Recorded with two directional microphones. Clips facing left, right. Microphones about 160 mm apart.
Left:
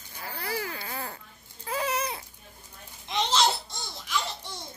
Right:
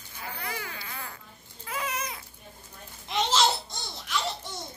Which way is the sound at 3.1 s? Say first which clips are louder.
Even; centre (ahead or behind).